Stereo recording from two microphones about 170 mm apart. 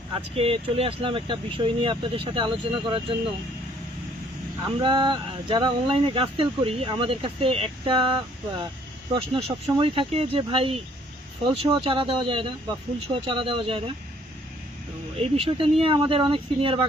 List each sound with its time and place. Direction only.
0.2 s speech: 35° right (ahead or behind)
4.8 s speech: 30° right (ahead or behind)
9.3 s speech: 30° right (ahead or behind)
15.2 s speech: 35° right (ahead or behind)